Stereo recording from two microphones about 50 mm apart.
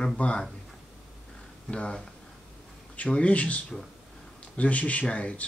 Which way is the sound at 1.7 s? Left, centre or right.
Left.